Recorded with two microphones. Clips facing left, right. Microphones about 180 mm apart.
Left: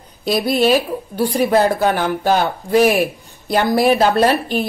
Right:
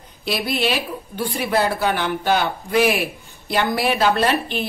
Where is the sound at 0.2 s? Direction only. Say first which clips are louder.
Left 6 dB; 40° left (ahead or behind).